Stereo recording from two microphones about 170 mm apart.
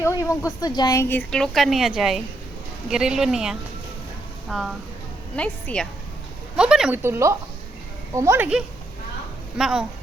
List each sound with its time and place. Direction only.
0.0 s a woman's voice: 15° left (ahead or behind); by 7.0 s 5° right (ahead or behind)
7.0 s speech: 15° right (ahead or behind)
9.6 s speech: centre (ahead or behind)